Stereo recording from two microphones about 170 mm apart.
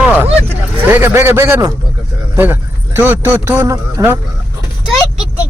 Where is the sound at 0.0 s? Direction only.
10° right (ahead or behind).